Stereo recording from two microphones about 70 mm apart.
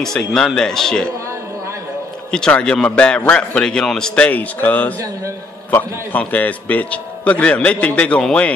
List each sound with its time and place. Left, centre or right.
0.0 s a man's voice: centre
2.3 s a man's voice: centre